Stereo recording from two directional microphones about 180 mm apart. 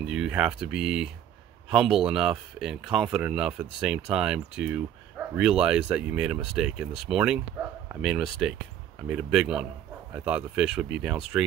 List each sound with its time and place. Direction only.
0.0 s speech: 5° right (ahead or behind)